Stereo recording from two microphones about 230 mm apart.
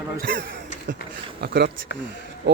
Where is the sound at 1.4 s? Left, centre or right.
Right.